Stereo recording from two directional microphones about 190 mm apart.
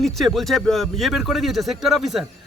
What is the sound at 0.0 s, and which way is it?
Speech, centre (ahead or behind).